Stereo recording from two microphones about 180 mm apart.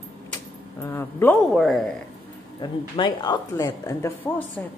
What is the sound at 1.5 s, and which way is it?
Speech, centre (ahead or behind).